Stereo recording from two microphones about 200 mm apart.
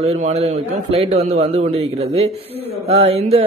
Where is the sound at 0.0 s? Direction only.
30° right (ahead or behind).